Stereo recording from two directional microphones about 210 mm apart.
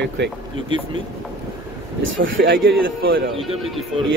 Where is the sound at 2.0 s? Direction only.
65° right (ahead or behind).